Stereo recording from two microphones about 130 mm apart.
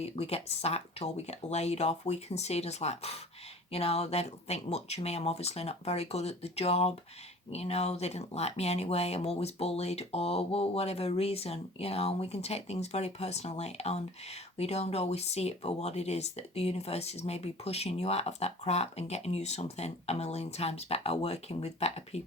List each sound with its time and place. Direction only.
0.0 s speech: 50° left (ahead or behind)